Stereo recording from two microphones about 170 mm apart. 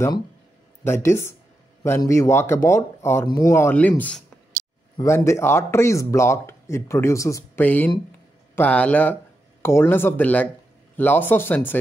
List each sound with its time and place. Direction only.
0.8 s a man's voice: 15° left (ahead or behind)